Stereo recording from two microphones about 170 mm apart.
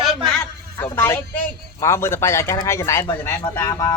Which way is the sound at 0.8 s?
15° left (ahead or behind).